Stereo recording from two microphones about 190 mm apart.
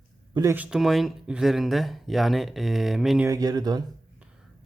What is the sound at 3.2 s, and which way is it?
Speech, 20° right (ahead or behind).